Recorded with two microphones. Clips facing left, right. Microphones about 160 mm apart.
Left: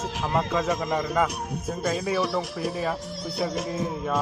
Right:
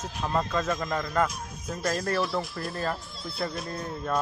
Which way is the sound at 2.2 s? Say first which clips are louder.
Left 3 dB; 75° left (ahead or behind).